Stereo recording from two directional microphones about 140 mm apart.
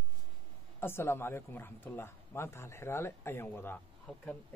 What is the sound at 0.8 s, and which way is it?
Speech, 15° left (ahead or behind).